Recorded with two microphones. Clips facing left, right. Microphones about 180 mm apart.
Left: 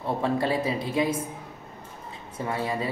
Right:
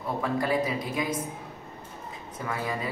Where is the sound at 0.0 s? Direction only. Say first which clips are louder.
Left 3 dB; 30° left (ahead or behind).